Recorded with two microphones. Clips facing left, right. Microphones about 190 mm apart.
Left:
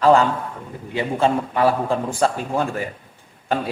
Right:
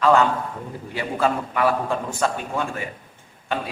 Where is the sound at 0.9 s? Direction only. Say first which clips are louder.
Left 3 dB; 25° left (ahead or behind).